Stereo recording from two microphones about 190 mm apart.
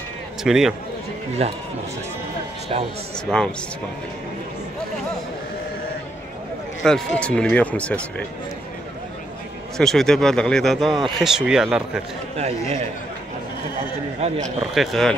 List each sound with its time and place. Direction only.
0.4 s speech: centre (ahead or behind)
1.4 s a man's voice: 30° right (ahead or behind)
3.3 s speech: 5° left (ahead or behind)
6.8 s speech: 5° left (ahead or behind)
9.8 s speech: 5° left (ahead or behind)
12.4 s a man's voice: 35° right (ahead or behind)
14.2 s a man's voice: 35° right (ahead or behind)
14.6 s speech: centre (ahead or behind)